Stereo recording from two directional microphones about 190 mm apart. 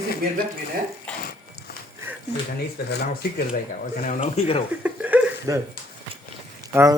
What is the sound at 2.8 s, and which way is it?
Speech, 55° left (ahead or behind).